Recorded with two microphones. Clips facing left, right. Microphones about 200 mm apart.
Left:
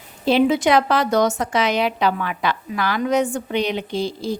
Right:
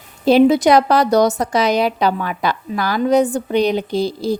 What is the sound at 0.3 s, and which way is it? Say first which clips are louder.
A woman's voice: right 5 dB; 40° right (ahead or behind).